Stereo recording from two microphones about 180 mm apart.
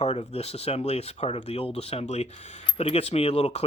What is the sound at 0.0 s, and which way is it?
Speech, 40° left (ahead or behind).